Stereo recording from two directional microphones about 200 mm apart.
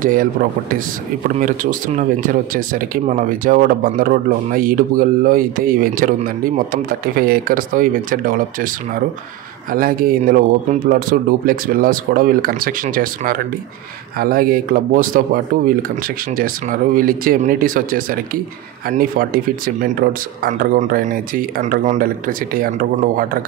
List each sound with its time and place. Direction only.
0.0 s speech: 45° right (ahead or behind)